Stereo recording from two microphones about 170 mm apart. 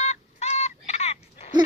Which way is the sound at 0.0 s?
40° left (ahead or behind).